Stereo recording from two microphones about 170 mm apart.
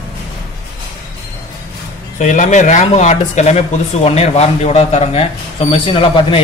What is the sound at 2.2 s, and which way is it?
Speech, 45° left (ahead or behind).